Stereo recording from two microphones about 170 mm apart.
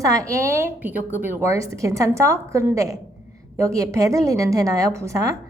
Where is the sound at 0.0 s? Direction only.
20° right (ahead or behind).